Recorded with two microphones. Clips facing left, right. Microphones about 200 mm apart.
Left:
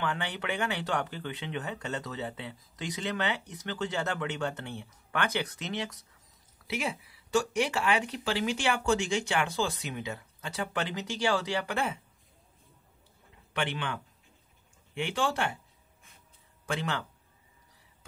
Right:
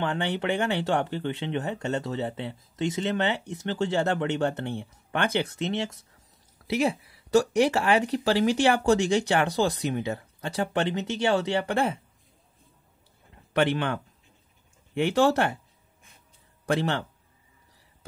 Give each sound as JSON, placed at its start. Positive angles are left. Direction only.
{"t": 0.0, "sound": "speech", "side_deg": -25}
{"t": 7.3, "sound": "speech", "side_deg": -35}
{"t": 13.5, "sound": "speech", "side_deg": -40}